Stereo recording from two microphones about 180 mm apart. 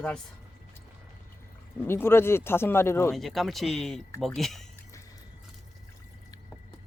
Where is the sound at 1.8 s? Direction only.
15° left (ahead or behind).